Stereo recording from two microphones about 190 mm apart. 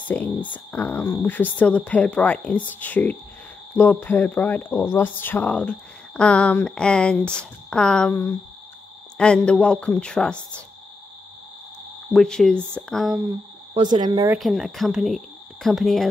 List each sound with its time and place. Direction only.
0.1 s speech: 10° left (ahead or behind)
12.1 s speech: 5° left (ahead or behind)
13.7 s speech: 25° right (ahead or behind)
14.3 s speech: centre (ahead or behind)